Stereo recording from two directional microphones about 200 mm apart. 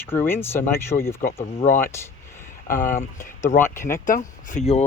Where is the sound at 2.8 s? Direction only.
40° left (ahead or behind).